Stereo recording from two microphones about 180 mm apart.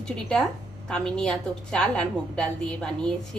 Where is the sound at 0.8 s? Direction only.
5° left (ahead or behind).